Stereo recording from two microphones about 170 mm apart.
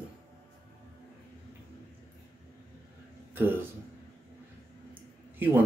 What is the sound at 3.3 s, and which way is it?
Speech, 10° right (ahead or behind).